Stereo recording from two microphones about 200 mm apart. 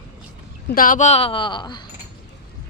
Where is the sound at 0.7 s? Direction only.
45° left (ahead or behind); by 1.8 s 20° left (ahead or behind).